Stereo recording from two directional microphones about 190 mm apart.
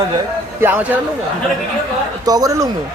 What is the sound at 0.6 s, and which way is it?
Speech, 10° right (ahead or behind).